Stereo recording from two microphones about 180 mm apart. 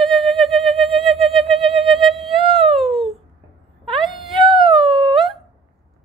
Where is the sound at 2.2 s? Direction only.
Centre (ahead or behind).